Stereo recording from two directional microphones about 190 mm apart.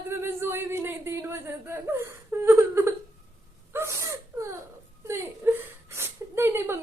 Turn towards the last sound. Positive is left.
turn(degrees=-10)  # may be behind; listen again after turning